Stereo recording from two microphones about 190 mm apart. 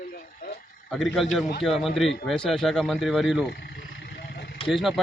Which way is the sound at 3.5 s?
60° left (ahead or behind).